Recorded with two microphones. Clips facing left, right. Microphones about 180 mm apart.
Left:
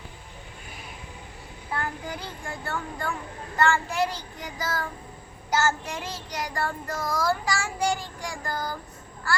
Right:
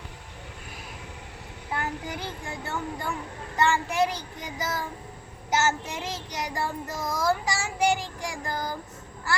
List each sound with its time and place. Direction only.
1.7 s child singing: 20° right (ahead or behind)